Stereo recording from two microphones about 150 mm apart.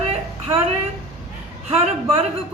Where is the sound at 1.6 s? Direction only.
40° right (ahead or behind).